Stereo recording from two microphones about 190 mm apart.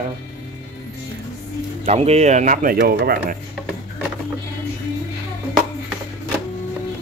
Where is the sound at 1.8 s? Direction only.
35° right (ahead or behind).